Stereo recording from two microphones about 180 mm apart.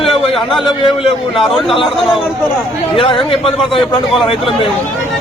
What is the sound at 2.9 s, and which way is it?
Speech, 30° left (ahead or behind).